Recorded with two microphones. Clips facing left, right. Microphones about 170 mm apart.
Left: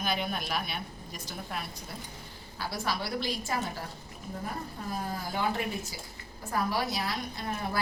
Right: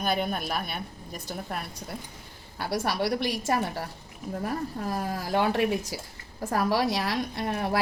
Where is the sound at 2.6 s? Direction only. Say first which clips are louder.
Right 6 dB; 70° right (ahead or behind).